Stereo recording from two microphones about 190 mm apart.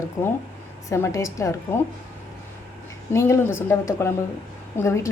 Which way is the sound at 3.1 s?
15° left (ahead or behind).